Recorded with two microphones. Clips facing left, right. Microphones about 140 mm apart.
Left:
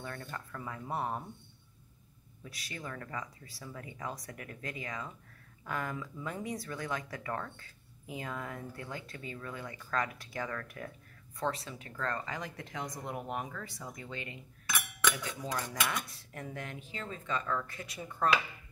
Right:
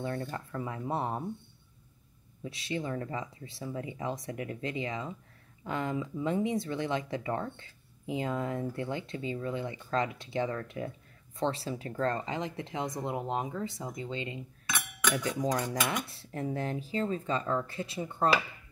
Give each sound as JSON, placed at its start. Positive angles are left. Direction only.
{"t": 0.0, "sound": "speech", "side_deg": -25}
{"t": 2.4, "sound": "speech", "side_deg": -25}
{"t": 15.2, "sound": "speech", "side_deg": -40}